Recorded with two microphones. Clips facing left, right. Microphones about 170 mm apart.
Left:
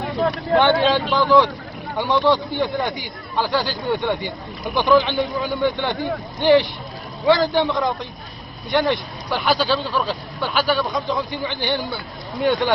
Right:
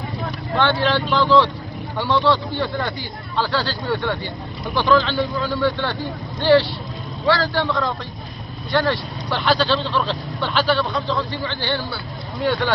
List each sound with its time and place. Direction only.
0.0 s vehicle: 65° left (ahead or behind)
0.6 s speech: 15° left (ahead or behind)